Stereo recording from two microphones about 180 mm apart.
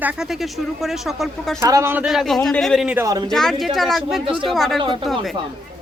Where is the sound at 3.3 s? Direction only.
Centre (ahead or behind).